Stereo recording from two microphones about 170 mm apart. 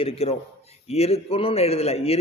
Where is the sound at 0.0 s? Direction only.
35° left (ahead or behind).